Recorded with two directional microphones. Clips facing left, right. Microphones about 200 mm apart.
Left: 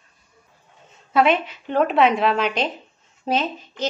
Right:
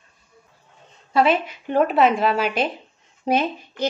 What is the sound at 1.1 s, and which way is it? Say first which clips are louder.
A woman's voice: even; centre (ahead or behind).